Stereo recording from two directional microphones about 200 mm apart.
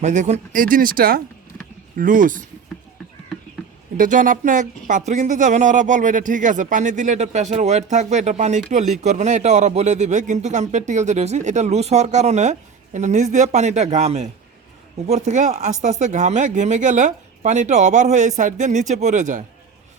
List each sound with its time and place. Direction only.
0.0 s speech: 35° right (ahead or behind)
3.9 s speech: 40° right (ahead or behind)